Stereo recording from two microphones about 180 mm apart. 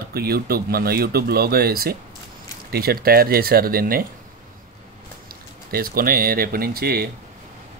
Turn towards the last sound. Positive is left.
turn(degrees=-60)  # may be behind; listen again after turning